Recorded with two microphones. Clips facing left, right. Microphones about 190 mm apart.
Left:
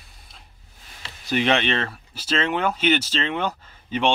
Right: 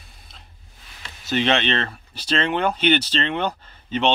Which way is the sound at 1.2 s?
10° left (ahead or behind).